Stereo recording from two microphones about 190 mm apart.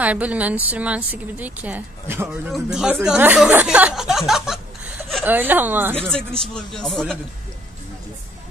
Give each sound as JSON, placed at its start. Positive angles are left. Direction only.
{"t": 0.0, "sound": "a woman's voice", "side_deg": -10}
{"t": 6.4, "sound": "a man's voice", "side_deg": 5}